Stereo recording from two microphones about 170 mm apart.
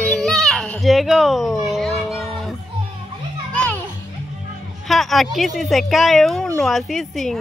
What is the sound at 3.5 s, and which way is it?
Music, 5° left (ahead or behind).